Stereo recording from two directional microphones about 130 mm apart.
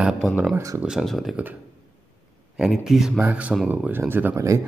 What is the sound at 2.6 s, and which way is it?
Speech, centre (ahead or behind).